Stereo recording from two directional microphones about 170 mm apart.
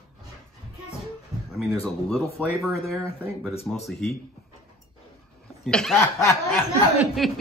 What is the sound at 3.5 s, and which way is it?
Speech, 35° left (ahead or behind).